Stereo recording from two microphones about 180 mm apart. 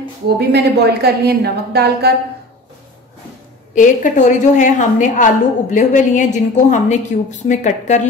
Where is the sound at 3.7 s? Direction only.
45° left (ahead or behind).